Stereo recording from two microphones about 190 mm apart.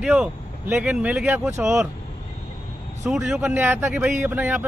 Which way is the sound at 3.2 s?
10° right (ahead or behind).